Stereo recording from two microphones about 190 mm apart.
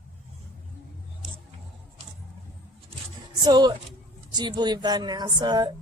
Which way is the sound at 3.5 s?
20° right (ahead or behind).